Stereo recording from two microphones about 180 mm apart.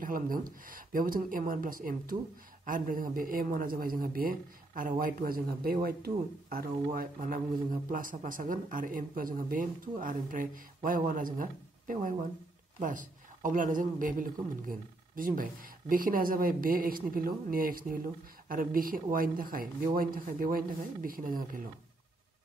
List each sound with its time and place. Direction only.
0.0 s speech: 50° right (ahead or behind)